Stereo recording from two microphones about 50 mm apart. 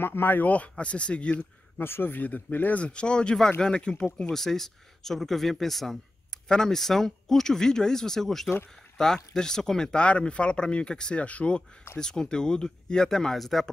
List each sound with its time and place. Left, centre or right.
0.0 s speech: left
1.8 s speech: left
2.8 s speech: left
4.3 s speech: centre; by 11.6 s left
12.0 s speech: centre